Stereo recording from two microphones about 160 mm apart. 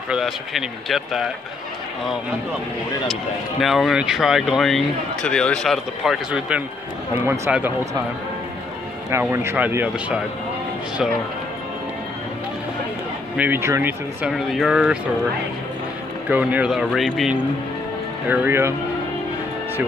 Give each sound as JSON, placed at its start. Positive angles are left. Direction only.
{"t": 0.1, "sound": "speech", "side_deg": 0}
{"t": 3.6, "sound": "speech", "side_deg": 0}
{"t": 9.1, "sound": "speech", "side_deg": -15}
{"t": 13.4, "sound": "speech", "side_deg": -15}
{"t": 14.3, "sound": "speech", "side_deg": 0}
{"t": 16.3, "sound": "speech", "side_deg": -10}
{"t": 18.3, "sound": "speech", "side_deg": -15}